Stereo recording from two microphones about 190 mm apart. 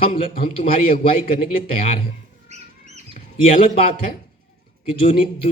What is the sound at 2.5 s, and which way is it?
Rodents, 35° right (ahead or behind).